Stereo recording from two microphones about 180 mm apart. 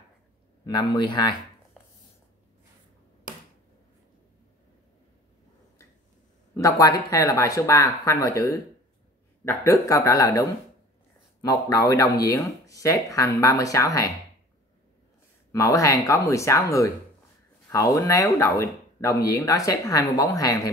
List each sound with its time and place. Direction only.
0.7 s speech: 25° left (ahead or behind)
6.5 s speech: 20° left (ahead or behind)
15.5 s speech: 15° left (ahead or behind)